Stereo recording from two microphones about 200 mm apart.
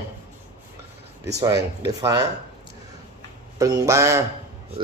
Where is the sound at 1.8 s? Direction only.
20° right (ahead or behind).